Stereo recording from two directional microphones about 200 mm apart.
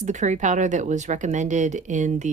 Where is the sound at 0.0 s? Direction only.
35° right (ahead or behind).